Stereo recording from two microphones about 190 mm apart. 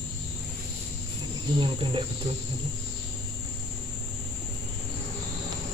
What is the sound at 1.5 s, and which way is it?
Cricket, 25° right (ahead or behind).